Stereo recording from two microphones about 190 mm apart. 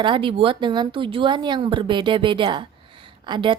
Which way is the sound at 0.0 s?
25° right (ahead or behind).